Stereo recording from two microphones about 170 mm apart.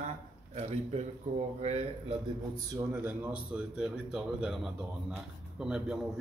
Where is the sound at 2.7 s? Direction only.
15° right (ahead or behind).